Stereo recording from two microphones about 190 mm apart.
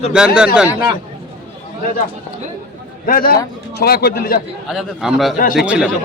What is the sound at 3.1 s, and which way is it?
A man's voice, 50° left (ahead or behind).